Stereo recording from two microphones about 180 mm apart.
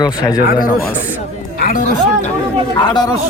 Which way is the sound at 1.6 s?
50° left (ahead or behind).